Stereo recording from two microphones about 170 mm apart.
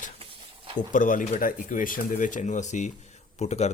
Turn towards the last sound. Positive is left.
turn(degrees=40)  # may be behind; listen again after turning